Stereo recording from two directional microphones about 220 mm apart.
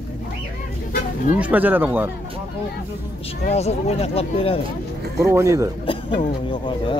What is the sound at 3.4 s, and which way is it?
Speech, 30° left (ahead or behind).